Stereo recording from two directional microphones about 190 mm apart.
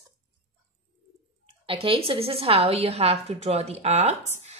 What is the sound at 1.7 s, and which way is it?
A woman's voice, 30° right (ahead or behind).